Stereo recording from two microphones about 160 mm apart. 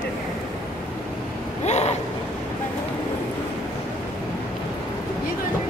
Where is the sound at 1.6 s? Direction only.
45° left (ahead or behind).